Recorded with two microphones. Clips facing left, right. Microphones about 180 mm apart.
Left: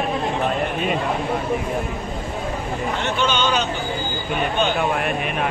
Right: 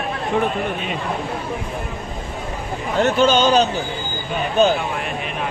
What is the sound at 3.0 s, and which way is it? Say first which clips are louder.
Speech: right 8 dB; 40° right (ahead or behind).